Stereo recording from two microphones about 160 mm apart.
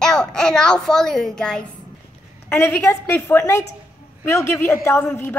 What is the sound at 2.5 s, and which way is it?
A woman's voice, 15° left (ahead or behind).